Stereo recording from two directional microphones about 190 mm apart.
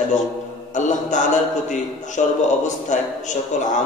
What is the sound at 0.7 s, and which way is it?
Mantra, 40° left (ahead or behind).